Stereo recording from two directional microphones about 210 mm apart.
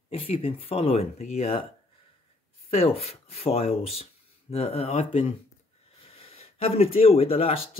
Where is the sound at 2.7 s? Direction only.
30° left (ahead or behind).